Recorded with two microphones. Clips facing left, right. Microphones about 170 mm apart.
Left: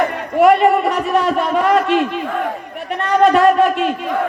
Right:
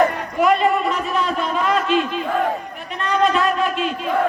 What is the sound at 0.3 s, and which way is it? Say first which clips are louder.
A man's voice: left 6 dB; 65° left (ahead or behind).